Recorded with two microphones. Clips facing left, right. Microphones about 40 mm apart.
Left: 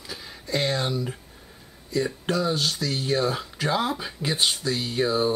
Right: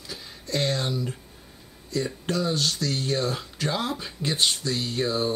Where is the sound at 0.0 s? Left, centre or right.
Centre.